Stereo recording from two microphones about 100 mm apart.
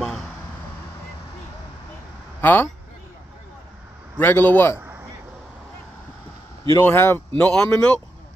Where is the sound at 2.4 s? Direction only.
20° left (ahead or behind).